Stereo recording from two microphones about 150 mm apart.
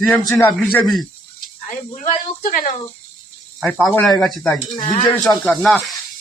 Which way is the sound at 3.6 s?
Centre (ahead or behind).